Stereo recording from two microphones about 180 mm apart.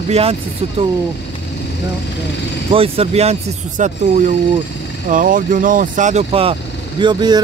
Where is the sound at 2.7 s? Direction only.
30° right (ahead or behind).